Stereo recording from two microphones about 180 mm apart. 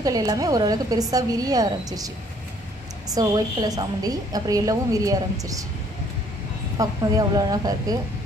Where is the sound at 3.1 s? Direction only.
20° right (ahead or behind).